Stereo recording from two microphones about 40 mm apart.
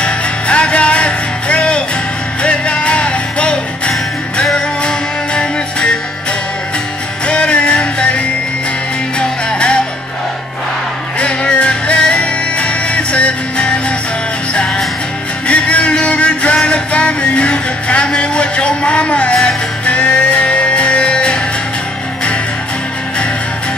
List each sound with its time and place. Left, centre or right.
0.0 s music: left
7.2 s music: left
9.2 s music: left
11.1 s music: left
15.4 s music: left